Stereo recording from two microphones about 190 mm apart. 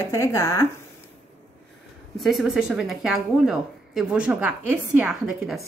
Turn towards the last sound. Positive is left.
turn(degrees=-5)  # may be behind; listen again after turning